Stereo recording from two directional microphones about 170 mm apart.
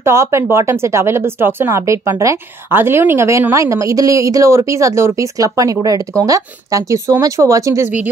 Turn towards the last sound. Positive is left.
turn(degrees=-20)  # may be behind; listen again after turning